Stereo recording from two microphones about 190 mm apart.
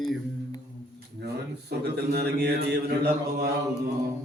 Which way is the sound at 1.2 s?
55° right (ahead or behind).